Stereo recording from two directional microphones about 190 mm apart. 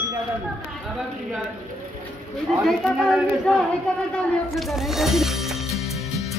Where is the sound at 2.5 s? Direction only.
Centre (ahead or behind).